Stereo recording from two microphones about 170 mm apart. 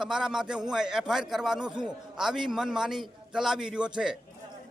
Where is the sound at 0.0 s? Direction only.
5° right (ahead or behind).